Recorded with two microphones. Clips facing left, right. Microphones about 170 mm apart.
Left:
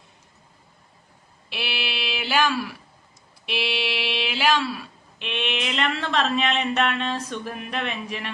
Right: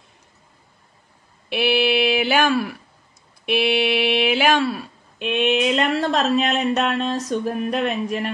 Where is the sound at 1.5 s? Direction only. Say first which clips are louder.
Right 13 dB; 55° right (ahead or behind).